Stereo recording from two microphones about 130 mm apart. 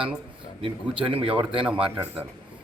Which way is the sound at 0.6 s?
45° right (ahead or behind).